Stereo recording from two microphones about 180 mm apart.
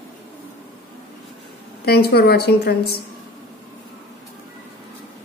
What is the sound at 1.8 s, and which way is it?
Speech, 60° left (ahead or behind).